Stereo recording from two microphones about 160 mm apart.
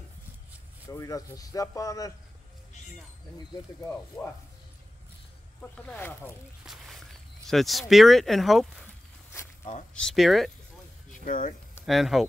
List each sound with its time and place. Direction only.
0.8 s speech: 20° left (ahead or behind)
3.8 s speech: 10° left (ahead or behind)
5.6 s speech: 10° left (ahead or behind)
6.6 s walk: centre (ahead or behind)
7.9 s speech: centre (ahead or behind)
9.9 s speech: centre (ahead or behind)
11.1 s a sound: 55° left (ahead or behind)
11.8 s speech: centre (ahead or behind)